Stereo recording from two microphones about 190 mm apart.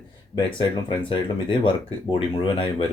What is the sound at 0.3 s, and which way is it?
Speech, 25° left (ahead or behind).